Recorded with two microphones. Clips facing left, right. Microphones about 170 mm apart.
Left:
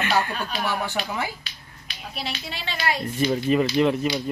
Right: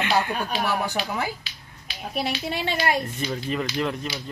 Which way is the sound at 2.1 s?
55° right (ahead or behind).